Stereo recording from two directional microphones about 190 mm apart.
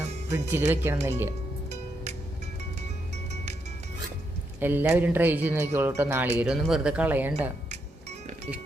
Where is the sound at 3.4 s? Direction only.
35° right (ahead or behind).